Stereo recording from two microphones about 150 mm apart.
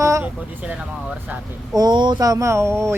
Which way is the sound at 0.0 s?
20° right (ahead or behind).